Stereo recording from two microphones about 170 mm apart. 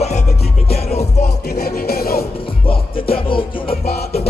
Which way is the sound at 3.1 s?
30° left (ahead or behind).